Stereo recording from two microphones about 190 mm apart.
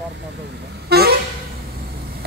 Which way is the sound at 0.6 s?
60° right (ahead or behind).